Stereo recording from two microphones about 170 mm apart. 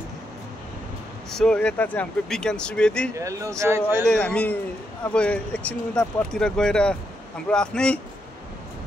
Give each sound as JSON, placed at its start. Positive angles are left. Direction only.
{"t": 1.3, "sound": "speech", "side_deg": 5}
{"t": 3.2, "sound": "speech", "side_deg": -20}
{"t": 4.1, "sound": "speech", "side_deg": 5}